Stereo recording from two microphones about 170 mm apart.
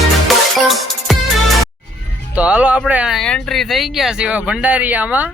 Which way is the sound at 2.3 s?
10° right (ahead or behind).